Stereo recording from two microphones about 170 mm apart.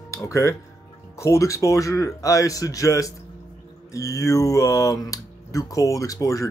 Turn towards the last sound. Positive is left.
turn(degrees=20)  # may be behind; listen again after turning